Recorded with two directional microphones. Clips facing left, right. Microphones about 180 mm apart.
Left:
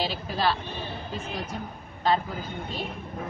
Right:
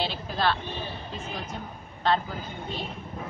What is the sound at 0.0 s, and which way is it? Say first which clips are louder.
Vehicle: left 1 dB; 10° left (ahead or behind).